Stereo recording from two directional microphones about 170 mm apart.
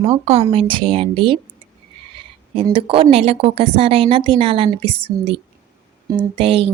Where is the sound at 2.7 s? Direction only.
30° right (ahead or behind).